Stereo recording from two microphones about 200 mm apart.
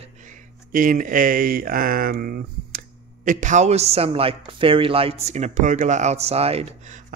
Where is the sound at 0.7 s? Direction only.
40° right (ahead or behind).